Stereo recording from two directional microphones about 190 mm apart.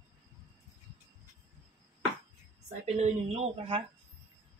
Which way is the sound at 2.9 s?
35° right (ahead or behind).